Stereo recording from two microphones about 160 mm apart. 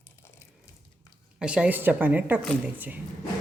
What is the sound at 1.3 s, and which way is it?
Speech, 5° right (ahead or behind).